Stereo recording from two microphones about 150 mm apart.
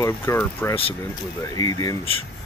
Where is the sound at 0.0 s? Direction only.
20° left (ahead or behind).